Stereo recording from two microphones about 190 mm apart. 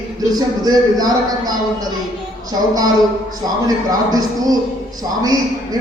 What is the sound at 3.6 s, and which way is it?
Speech, 20° right (ahead or behind).